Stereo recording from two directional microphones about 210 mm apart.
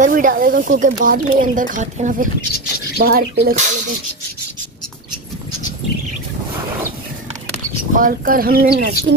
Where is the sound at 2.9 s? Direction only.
50° right (ahead or behind).